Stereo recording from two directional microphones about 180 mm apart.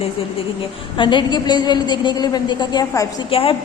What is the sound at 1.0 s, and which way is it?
A woman's voice, 25° left (ahead or behind).